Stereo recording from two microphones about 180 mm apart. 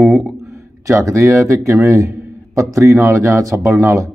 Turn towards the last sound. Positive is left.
turn(degrees=-15)  # may be behind; listen again after turning